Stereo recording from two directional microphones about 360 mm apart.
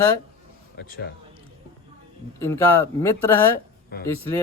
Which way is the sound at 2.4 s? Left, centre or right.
Centre.